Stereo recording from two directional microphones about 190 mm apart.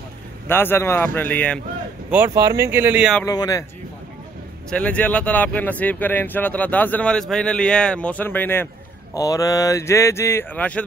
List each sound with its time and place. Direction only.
0.5 s speech: 10° left (ahead or behind)
2.0 s speech: 10° right (ahead or behind)
3.3 s speech: 20° left (ahead or behind)
4.6 s speech: 5° left (ahead or behind)